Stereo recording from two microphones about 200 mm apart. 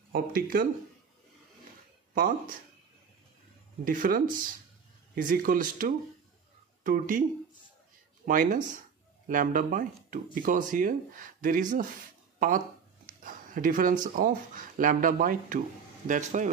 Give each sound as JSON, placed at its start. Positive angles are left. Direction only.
{"t": 0.1, "sound": "speech", "side_deg": -45}
{"t": 2.1, "sound": "speech", "side_deg": -45}
{"t": 3.8, "sound": "speech", "side_deg": -45}
{"t": 8.3, "sound": "speech", "side_deg": -40}
{"t": 12.4, "sound": "a sound", "side_deg": -40}
{"t": 14.0, "sound": "speech", "side_deg": -45}